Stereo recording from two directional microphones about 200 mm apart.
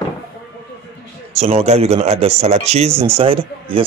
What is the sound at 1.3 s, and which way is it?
Speech, 30° right (ahead or behind).